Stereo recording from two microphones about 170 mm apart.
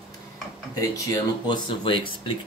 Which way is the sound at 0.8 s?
25° left (ahead or behind).